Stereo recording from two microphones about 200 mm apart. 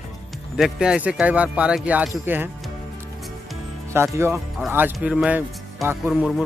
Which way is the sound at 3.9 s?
15° right (ahead or behind).